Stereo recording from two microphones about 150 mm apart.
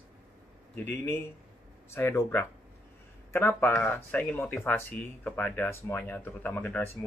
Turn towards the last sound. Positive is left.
turn(degrees=10)  # may be behind; listen again after turning